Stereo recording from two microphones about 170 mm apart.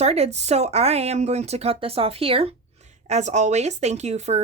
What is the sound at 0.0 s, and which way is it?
Speech, 40° right (ahead or behind).